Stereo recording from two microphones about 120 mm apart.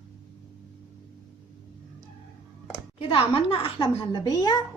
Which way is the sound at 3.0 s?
50° left (ahead or behind).